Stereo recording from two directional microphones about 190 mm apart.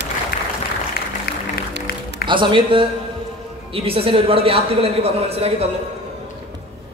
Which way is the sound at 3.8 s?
30° right (ahead or behind).